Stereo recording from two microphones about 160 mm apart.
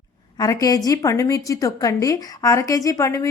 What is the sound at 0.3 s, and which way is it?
A woman's voice, 20° left (ahead or behind).